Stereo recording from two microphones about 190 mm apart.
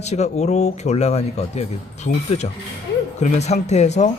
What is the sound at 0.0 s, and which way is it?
A man's voice, 35° left (ahead or behind).